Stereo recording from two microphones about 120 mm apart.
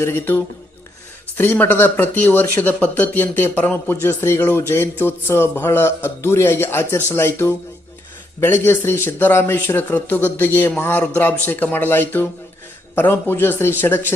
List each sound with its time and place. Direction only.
0.0 s a man's voice: 20° left (ahead or behind)